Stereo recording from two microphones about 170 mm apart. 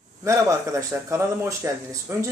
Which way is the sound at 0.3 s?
20° right (ahead or behind).